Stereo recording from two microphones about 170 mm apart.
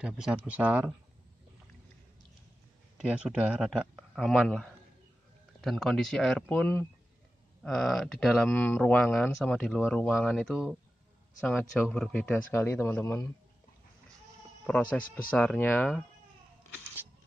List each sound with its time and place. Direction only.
0.0 s speech: 5° right (ahead or behind)
3.0 s speech: 5° right (ahead or behind); by 13.3 s 15° left (ahead or behind)
15.3 s speech: 10° left (ahead or behind)